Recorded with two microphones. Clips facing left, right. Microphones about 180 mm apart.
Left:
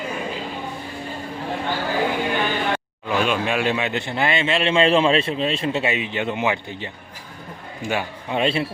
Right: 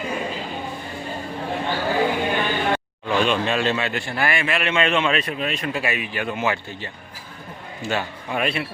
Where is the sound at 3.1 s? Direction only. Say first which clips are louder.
Right 1 dB; 5° left (ahead or behind).